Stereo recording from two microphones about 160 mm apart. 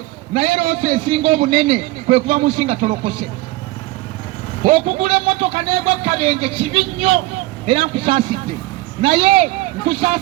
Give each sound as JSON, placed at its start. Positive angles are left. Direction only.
{"t": 0.3, "sound": "a man's voice", "side_deg": -35}
{"t": 4.6, "sound": "a man's voice", "side_deg": -35}